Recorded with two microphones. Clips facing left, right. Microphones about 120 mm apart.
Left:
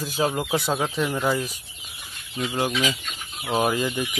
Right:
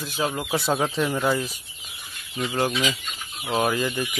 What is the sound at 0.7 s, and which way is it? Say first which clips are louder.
Speech: right 1 dB; centre (ahead or behind).